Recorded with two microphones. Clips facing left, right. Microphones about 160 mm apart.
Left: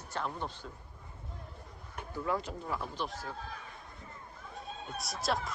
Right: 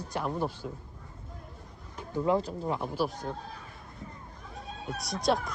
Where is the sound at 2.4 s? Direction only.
35° right (ahead or behind).